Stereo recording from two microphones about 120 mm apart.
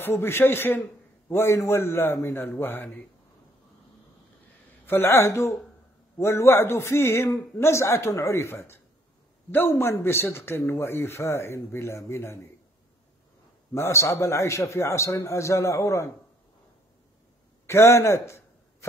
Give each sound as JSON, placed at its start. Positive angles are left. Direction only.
{"t": 0.0, "sound": "a man's voice", "side_deg": 20}
{"t": 4.8, "sound": "a man's voice", "side_deg": 20}
{"t": 13.7, "sound": "a man's voice", "side_deg": 20}
{"t": 17.6, "sound": "a sound", "side_deg": 20}